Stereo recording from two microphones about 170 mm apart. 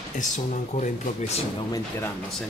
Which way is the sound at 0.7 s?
45° left (ahead or behind).